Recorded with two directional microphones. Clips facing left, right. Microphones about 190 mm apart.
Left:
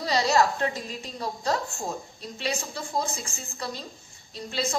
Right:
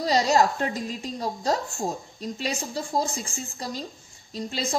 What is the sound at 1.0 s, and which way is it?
A woman's voice, 40° right (ahead or behind).